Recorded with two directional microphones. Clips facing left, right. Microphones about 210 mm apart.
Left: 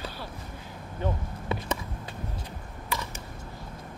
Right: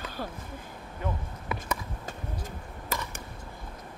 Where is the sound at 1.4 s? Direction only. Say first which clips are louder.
Left 3 dB; 25° left (ahead or behind).